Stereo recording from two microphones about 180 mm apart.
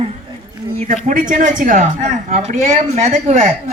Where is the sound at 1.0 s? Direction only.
45° right (ahead or behind).